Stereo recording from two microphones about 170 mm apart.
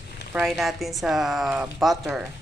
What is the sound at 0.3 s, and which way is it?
Speech, centre (ahead or behind).